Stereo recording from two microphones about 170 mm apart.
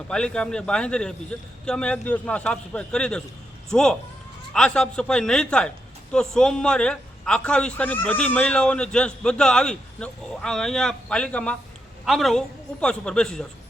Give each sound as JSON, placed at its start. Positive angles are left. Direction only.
{"t": 0.1, "sound": "a man's voice", "side_deg": 5}